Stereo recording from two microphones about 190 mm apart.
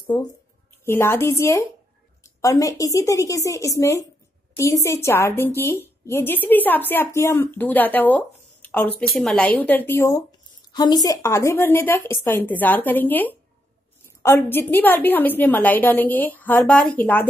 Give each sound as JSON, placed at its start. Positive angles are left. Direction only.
{"t": 0.8, "sound": "a woman's voice", "side_deg": 10}